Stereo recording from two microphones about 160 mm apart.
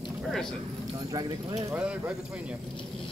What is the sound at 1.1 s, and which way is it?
Speech, 25° right (ahead or behind).